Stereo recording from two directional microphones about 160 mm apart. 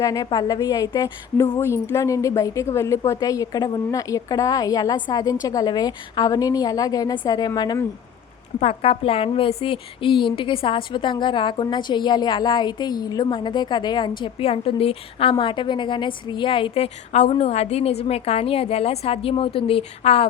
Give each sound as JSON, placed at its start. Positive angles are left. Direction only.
{"t": 0.0, "sound": "a woman's voice", "side_deg": 25}
{"t": 8.5, "sound": "a woman's voice", "side_deg": 40}